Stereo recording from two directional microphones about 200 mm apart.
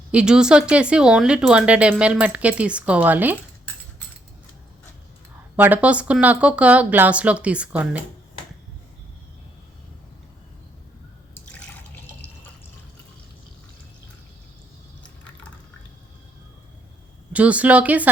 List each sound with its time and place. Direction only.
0.1 s speech: 5° right (ahead or behind)
5.5 s speech: 10° right (ahead or behind)
17.3 s speech: 5° right (ahead or behind)